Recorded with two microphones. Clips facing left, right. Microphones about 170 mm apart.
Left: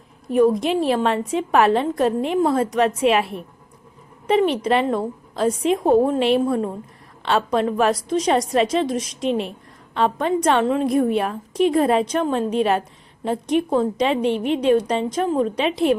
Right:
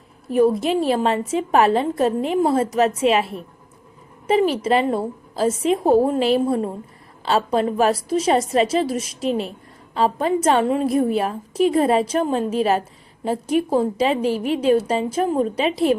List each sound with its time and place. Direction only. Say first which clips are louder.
0.3 s a woman's voice: even; centre (ahead or behind)
9.9 s a woman's voice: right 1 dB; 35° right (ahead or behind)
10.6 s a woman's voice: even; 5° right (ahead or behind)